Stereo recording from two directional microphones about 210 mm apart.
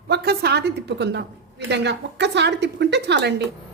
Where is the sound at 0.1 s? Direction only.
50° right (ahead or behind).